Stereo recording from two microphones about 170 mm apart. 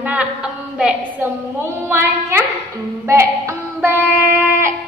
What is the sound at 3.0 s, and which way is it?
Child singing, 15° right (ahead or behind).